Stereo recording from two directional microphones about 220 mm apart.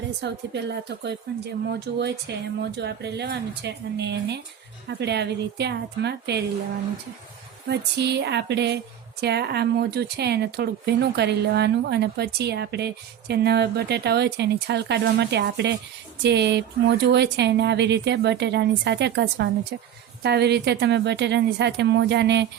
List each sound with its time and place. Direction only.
0.2 s speech: 50° right (ahead or behind)
7.7 s speech: 50° right (ahead or behind)